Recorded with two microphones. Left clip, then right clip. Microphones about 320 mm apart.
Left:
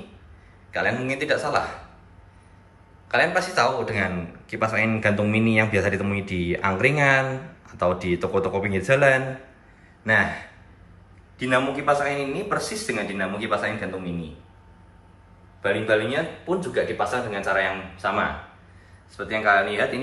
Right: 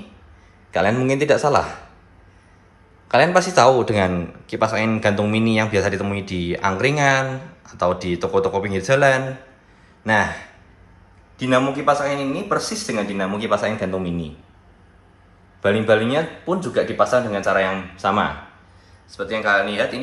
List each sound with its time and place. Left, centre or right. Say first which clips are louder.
0.7 s a man's voice: right 6 dB; centre
3.1 s a man's voice: right 6 dB; centre
11.3 s a man's voice: right 4 dB; centre
15.6 s a man's voice: right 5 dB; right
19.1 s a man's voice: right 1 dB; centre